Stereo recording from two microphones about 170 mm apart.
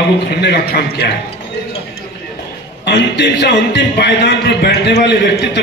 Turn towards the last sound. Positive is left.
turn(degrees=75)  # may be behind; listen again after turning